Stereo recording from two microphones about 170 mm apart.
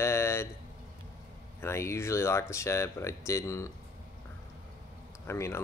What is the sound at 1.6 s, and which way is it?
Speech, 15° left (ahead or behind).